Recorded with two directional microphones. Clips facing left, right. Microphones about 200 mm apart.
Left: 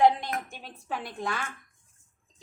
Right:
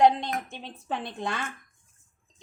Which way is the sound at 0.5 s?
25° right (ahead or behind).